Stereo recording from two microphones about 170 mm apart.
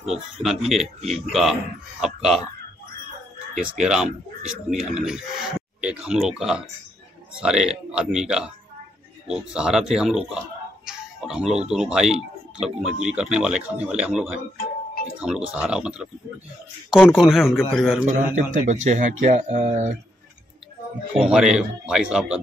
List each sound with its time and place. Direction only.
0.0 s speech: centre (ahead or behind)
3.5 s speech: 45° right (ahead or behind)
3.8 s speech: 5° right (ahead or behind)
10.9 s music: 5° right (ahead or behind)
11.7 s speech: 5° right (ahead or behind)
18.0 s speech: 45° right (ahead or behind)
21.3 s speech: 5° right (ahead or behind)